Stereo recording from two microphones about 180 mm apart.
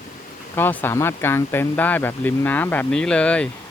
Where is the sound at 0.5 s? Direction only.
10° left (ahead or behind).